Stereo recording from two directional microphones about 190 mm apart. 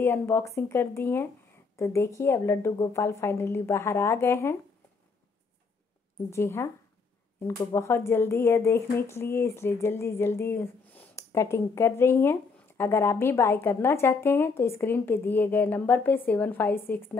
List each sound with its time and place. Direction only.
0.0 s speech: 10° left (ahead or behind)
6.3 s speech: 15° left (ahead or behind)